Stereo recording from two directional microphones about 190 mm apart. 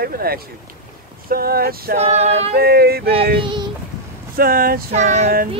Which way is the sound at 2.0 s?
35° right (ahead or behind).